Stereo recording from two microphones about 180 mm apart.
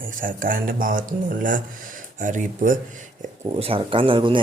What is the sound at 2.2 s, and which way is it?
Speech, 45° right (ahead or behind).